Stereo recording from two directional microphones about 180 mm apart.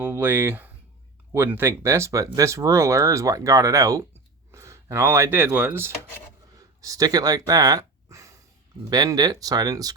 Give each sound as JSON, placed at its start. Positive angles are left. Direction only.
{"t": 0.0, "sound": "speech", "side_deg": -10}
{"t": 6.6, "sound": "a sound", "side_deg": -20}
{"t": 8.8, "sound": "speech", "side_deg": -20}